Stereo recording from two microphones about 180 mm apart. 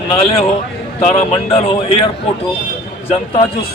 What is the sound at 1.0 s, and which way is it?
Speech, 35° left (ahead or behind).